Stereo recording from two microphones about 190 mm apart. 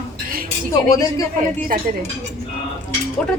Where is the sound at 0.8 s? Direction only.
15° left (ahead or behind).